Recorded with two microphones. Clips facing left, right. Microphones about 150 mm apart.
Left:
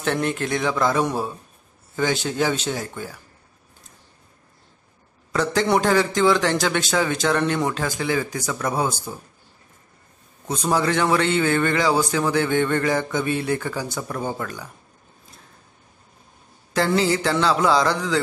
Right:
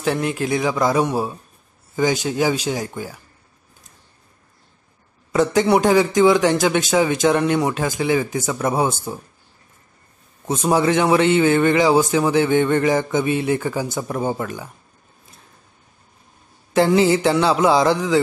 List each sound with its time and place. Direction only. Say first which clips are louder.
0.0 s a man's voice: right 2 dB; 5° right (ahead or behind)
5.3 s a man's voice: right 4 dB; 20° right (ahead or behind)
10.4 s a man's voice: right 4 dB; 25° right (ahead or behind)
16.7 s a man's voice: right 5 dB; 20° right (ahead or behind)